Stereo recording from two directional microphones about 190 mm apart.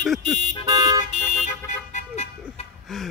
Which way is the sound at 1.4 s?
40° left (ahead or behind).